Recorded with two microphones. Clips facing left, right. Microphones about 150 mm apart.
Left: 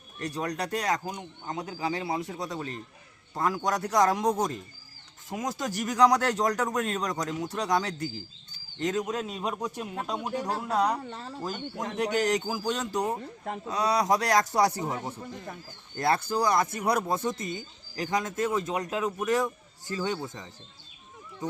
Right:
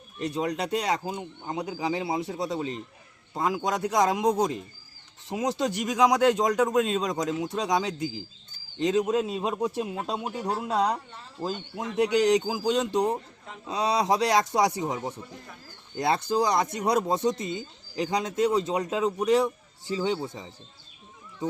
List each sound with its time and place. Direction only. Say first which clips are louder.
0.2 s speech: right 3 dB; 20° right (ahead or behind)
11.9 s speech: right 5 dB; 15° right (ahead or behind)